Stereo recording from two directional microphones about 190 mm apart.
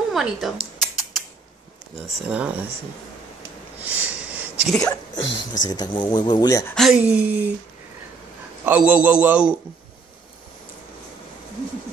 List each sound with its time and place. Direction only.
0.1 s a sound: centre (ahead or behind)
2.0 s a man's voice: 5° right (ahead or behind)
3.8 s a sound: 10° right (ahead or behind)
5.6 s speech: 20° left (ahead or behind)
6.7 s a man's voice: centre (ahead or behind)
8.6 s a man's voice: 5° right (ahead or behind)